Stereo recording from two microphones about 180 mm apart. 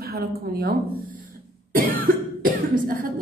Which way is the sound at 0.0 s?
60° right (ahead or behind).